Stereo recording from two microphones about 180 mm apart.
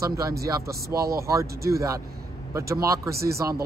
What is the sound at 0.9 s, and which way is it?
Speech, 60° right (ahead or behind).